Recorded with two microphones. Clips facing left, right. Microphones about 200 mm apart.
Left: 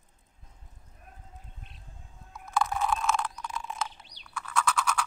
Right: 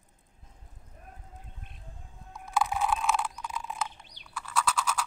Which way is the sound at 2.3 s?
Centre (ahead or behind).